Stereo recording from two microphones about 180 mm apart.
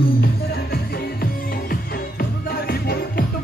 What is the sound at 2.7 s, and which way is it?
Music, 60° left (ahead or behind).